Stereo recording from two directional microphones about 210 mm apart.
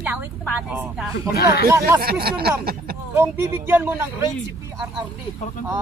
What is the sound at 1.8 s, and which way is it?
Speech, 45° right (ahead or behind).